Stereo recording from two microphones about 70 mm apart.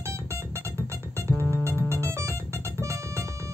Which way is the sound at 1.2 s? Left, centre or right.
Right.